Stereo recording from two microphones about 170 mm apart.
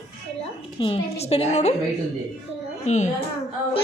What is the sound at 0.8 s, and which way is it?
Speech, 30° left (ahead or behind).